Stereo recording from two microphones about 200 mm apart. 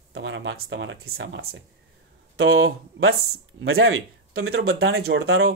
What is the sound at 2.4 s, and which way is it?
Speech, 90° right.